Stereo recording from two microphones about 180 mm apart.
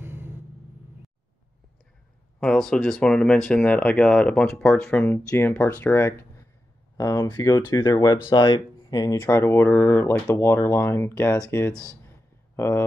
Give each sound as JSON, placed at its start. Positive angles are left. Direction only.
{"t": 0.0, "sound": "vehicle", "side_deg": -10}
{"t": 2.4, "sound": "speech", "side_deg": 5}
{"t": 11.7, "sound": "speech", "side_deg": -15}
{"t": 12.5, "sound": "speech", "side_deg": 15}